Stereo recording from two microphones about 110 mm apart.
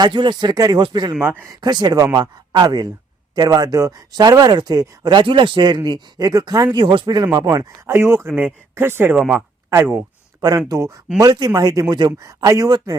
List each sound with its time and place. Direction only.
0.0 s speech: 40° right (ahead or behind)
1.2 s speech: 20° right (ahead or behind)
1.6 s speech: 35° right (ahead or behind)
7.9 s speech: 20° right (ahead or behind)
9.1 s speech: 10° right (ahead or behind)
9.6 s speech: 25° right (ahead or behind)